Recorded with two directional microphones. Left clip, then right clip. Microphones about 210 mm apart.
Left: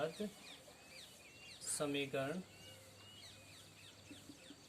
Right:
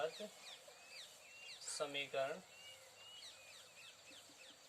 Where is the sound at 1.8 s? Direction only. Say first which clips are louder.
Left 1 dB; 25° left (ahead or behind).